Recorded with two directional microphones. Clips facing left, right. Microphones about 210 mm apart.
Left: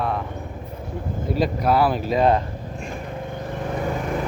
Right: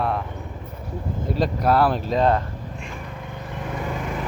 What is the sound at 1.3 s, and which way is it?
Speech, centre (ahead or behind).